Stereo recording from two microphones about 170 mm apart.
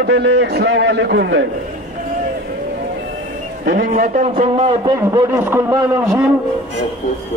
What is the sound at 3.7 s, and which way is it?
Speech, 55° right (ahead or behind).